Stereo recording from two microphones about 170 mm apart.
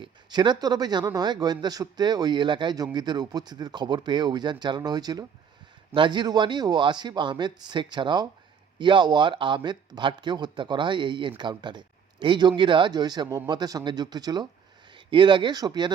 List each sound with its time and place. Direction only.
0.0 s a man's voice: 25° right (ahead or behind)